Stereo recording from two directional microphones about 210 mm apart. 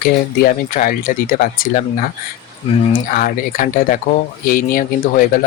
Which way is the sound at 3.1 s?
40° left (ahead or behind).